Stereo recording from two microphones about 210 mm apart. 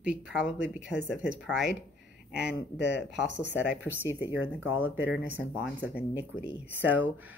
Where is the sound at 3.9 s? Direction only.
10° right (ahead or behind).